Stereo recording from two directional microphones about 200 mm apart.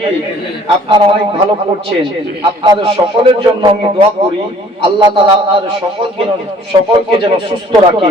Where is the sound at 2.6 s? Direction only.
25° right (ahead or behind).